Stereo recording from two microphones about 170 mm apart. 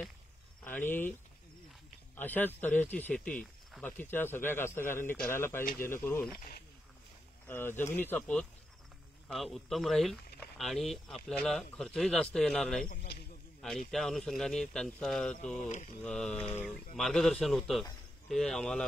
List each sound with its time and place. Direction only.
0.7 s speech: 10° left (ahead or behind)
2.1 s speech: 10° left (ahead or behind)
7.4 s speech: 10° left (ahead or behind)
12.8 s a man's voice: 60° left (ahead or behind)
13.6 s speech: centre (ahead or behind)
15.6 s mantra: 45° left (ahead or behind)
16.0 s speech: 5° left (ahead or behind)